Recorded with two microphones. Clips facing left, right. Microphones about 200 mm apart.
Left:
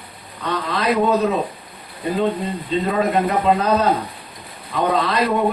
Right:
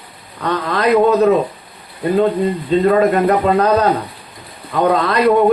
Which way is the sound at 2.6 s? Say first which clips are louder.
Right 7 dB; 60° right (ahead or behind).